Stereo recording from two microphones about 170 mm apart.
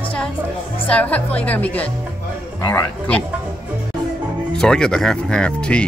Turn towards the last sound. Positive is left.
turn(degrees=5)  # may be behind; listen again after turning